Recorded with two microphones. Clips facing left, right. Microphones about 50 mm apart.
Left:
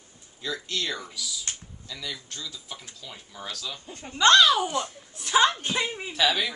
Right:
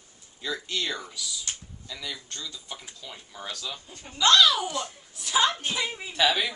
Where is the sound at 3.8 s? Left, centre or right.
Left.